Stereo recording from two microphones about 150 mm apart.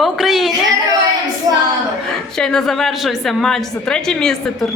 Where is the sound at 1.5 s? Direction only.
25° right (ahead or behind).